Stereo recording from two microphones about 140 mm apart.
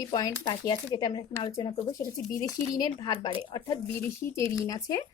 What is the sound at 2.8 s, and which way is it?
A woman's voice, 30° left (ahead or behind).